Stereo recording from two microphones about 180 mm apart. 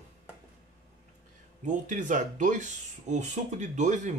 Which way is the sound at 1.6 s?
45° right (ahead or behind).